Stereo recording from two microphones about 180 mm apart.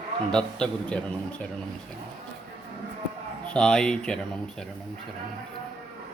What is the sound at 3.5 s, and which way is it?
A man's voice, 5° left (ahead or behind).